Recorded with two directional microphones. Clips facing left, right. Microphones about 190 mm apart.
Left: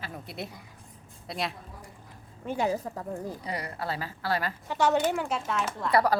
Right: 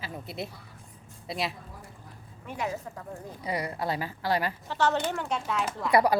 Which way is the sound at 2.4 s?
30° left (ahead or behind).